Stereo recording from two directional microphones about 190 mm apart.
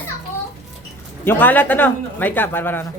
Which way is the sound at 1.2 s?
10° left (ahead or behind).